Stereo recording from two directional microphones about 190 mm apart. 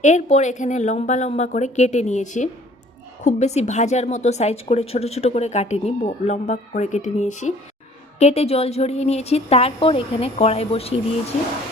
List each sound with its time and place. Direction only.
0.0 s a woman's voice: 40° left (ahead or behind)